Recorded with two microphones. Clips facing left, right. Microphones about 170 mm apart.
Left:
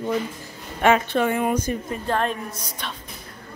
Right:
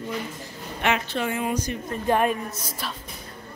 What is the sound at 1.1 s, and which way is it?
Speech, 55° left (ahead or behind).